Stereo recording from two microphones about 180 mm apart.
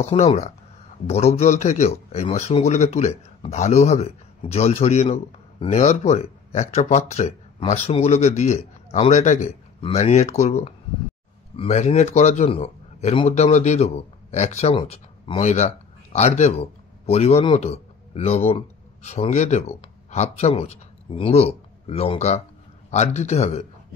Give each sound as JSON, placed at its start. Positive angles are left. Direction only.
{"t": 0.0, "sound": "a man's voice", "side_deg": 35}